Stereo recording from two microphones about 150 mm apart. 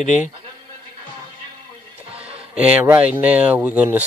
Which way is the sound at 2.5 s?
10° right (ahead or behind).